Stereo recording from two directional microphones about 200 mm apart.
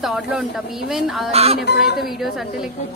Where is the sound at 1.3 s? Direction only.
30° right (ahead or behind).